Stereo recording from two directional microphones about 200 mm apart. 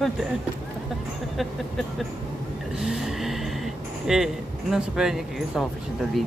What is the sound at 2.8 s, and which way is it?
Gasp, centre (ahead or behind).